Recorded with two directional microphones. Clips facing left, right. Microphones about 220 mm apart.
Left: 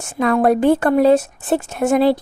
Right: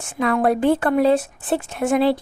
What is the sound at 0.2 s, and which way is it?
A woman's voice, 45° left (ahead or behind).